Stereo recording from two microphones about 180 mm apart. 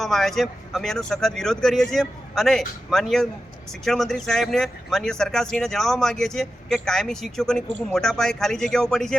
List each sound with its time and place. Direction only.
0.0 s speech: centre (ahead or behind)